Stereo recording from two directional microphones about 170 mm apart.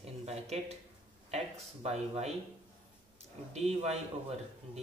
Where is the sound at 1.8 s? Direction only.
40° right (ahead or behind).